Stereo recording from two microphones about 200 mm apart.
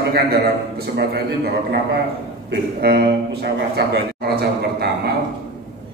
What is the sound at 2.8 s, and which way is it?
A man's voice, 50° right (ahead or behind).